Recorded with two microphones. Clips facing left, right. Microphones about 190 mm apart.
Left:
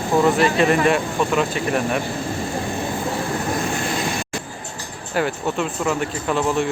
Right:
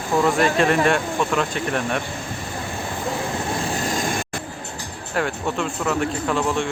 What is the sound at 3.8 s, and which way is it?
Vehicle, 45° right (ahead or behind).